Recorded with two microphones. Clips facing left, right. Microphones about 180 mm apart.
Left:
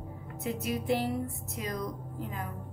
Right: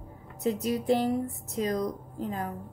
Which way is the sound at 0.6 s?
40° right (ahead or behind).